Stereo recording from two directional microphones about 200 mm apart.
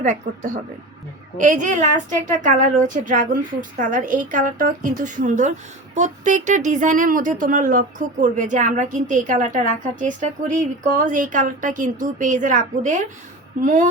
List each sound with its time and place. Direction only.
0.3 s a woman's voice: 45° right (ahead or behind)